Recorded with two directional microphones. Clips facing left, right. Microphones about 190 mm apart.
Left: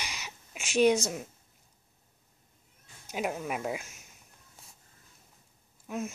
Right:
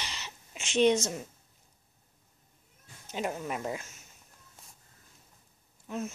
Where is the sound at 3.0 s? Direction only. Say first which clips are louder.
Left 1 dB; 5° left (ahead or behind).